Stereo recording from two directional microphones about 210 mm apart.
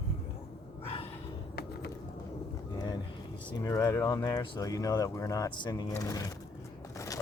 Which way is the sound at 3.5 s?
15° left (ahead or behind).